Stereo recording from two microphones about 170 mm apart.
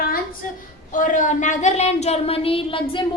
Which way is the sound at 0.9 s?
50° left (ahead or behind).